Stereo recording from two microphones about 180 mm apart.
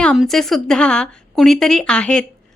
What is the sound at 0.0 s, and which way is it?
A woman's voice, 5° left (ahead or behind).